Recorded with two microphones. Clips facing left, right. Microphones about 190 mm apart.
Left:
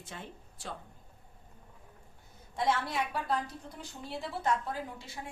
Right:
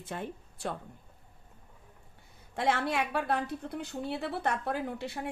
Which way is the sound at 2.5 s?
65° right (ahead or behind).